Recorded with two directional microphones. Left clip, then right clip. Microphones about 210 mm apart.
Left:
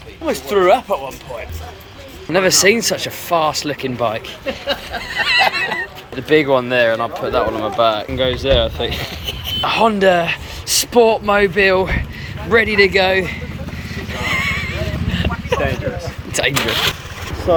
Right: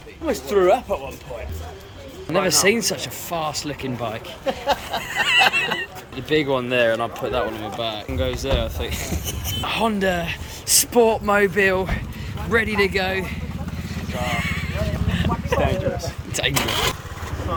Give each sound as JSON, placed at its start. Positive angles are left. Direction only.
{"t": 0.3, "sound": "speech", "side_deg": 10}
{"t": 2.3, "sound": "speech", "side_deg": -10}
{"t": 4.4, "sound": "a sound", "side_deg": -35}
{"t": 5.0, "sound": "a sound", "side_deg": -20}
{"t": 6.1, "sound": "speech", "side_deg": -10}
{"t": 9.6, "sound": "speech", "side_deg": -10}
{"t": 13.9, "sound": "neigh", "side_deg": -10}
{"t": 16.3, "sound": "vehicle", "side_deg": -10}